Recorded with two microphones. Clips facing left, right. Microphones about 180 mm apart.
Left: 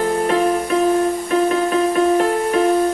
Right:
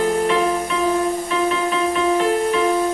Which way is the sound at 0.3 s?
45° left (ahead or behind).